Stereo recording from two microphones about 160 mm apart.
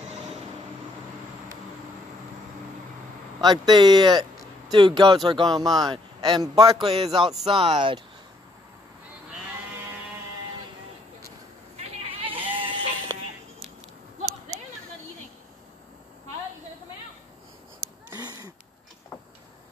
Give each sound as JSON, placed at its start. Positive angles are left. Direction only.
{"t": 3.3, "sound": "a man's voice", "side_deg": -25}
{"t": 6.8, "sound": "speech", "side_deg": -40}
{"t": 7.2, "sound": "speech", "side_deg": 0}
{"t": 7.5, "sound": "speech", "side_deg": -35}
{"t": 11.7, "sound": "goat", "side_deg": -35}
{"t": 12.4, "sound": "music", "side_deg": -30}
{"t": 17.7, "sound": "wheeze", "side_deg": -20}